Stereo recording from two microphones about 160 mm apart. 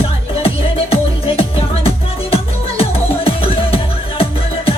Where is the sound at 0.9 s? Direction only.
35° left (ahead or behind).